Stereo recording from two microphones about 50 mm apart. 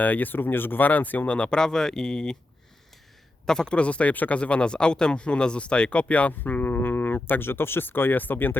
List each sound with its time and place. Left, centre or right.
0.0 s speech: left
1.3 s speech: centre
3.4 s speech: centre
6.4 s speech: left